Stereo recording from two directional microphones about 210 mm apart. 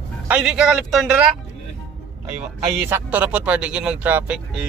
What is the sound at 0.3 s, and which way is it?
Speech, 5° right (ahead or behind).